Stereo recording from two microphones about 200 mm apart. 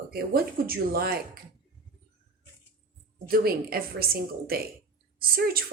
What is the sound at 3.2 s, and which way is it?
A woman's voice, 50° right (ahead or behind).